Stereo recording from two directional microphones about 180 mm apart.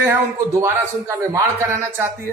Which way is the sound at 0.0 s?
15° right (ahead or behind).